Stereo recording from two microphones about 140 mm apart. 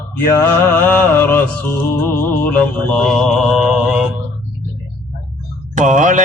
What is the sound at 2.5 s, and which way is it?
Mantra, 10° left (ahead or behind).